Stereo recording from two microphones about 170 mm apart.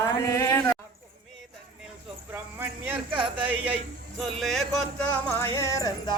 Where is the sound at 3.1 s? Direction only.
10° right (ahead or behind).